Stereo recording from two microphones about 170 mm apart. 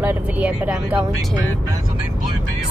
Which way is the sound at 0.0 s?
10° right (ahead or behind).